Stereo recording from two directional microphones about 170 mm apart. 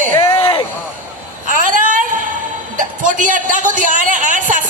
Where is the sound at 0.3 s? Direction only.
30° left (ahead or behind).